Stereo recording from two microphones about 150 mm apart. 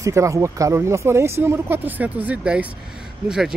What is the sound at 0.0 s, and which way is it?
Speech, 20° right (ahead or behind).